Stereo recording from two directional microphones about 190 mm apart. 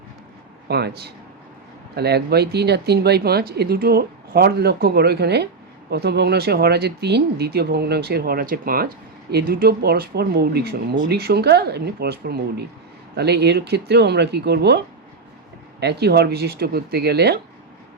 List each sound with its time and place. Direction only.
0.7 s speech: 60° right (ahead or behind)
15.8 s speech: 60° right (ahead or behind)